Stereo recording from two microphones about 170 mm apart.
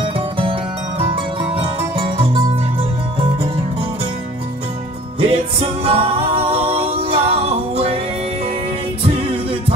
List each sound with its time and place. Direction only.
2.1 s music: 30° right (ahead or behind)
5.2 s music: 35° right (ahead or behind)
9.0 s music: 35° right (ahead or behind)